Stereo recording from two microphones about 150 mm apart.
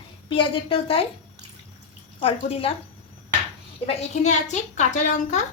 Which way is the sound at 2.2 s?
40° left (ahead or behind).